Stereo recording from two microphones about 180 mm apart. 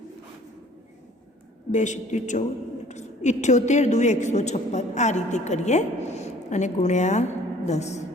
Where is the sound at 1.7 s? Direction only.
40° left (ahead or behind).